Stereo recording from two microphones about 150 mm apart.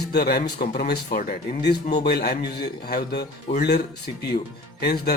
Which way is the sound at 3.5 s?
40° left (ahead or behind).